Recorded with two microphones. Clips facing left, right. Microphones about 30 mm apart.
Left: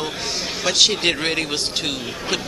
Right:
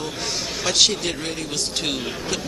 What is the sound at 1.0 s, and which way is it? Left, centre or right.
Speech, left.